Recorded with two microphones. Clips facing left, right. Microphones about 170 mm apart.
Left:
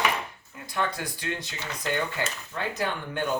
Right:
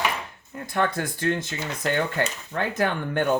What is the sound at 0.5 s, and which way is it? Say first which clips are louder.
Speech: right 5 dB; 50° right (ahead or behind).